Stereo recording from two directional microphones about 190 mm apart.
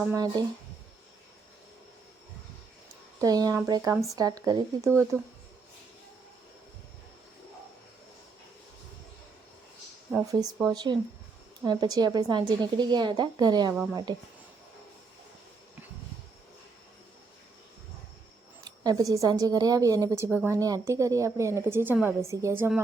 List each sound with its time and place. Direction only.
0.0 s a woman's voice: 10° right (ahead or behind)
3.2 s a woman's voice: 20° right (ahead or behind)
10.6 s a woman's voice: 20° right (ahead or behind)
18.6 s a woman's voice: 20° right (ahead or behind)